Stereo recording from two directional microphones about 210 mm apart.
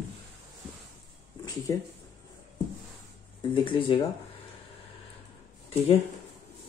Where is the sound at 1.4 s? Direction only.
15° left (ahead or behind).